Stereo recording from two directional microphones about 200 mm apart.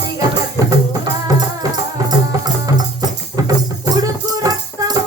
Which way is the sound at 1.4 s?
20° right (ahead or behind).